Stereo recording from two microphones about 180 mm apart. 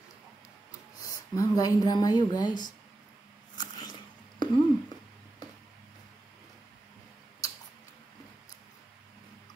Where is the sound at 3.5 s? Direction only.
20° left (ahead or behind).